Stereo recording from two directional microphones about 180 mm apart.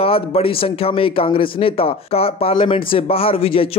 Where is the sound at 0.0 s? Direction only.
30° left (ahead or behind).